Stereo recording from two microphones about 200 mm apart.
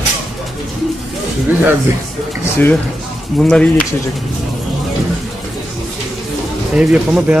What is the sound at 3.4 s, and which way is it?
Speech, 5° left (ahead or behind).